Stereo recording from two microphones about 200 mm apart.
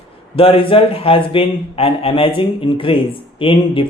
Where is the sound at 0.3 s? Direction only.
30° left (ahead or behind).